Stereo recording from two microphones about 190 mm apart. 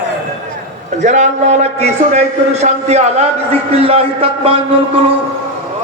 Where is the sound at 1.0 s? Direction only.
40° right (ahead or behind).